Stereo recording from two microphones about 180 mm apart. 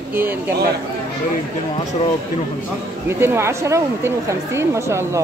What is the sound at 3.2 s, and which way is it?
A woman's voice, 15° right (ahead or behind).